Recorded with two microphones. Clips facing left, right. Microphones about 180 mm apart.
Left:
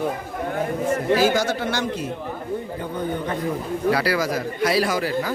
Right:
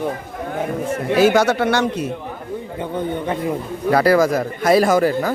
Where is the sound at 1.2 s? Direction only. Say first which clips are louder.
Right 6 dB; 70° right (ahead or behind).